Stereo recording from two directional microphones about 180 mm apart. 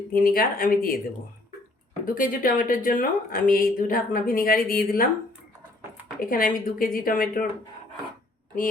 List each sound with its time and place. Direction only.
0.1 s speech: 55° left (ahead or behind)
2.0 s speech: 50° left (ahead or behind)
6.1 s speech: 50° left (ahead or behind)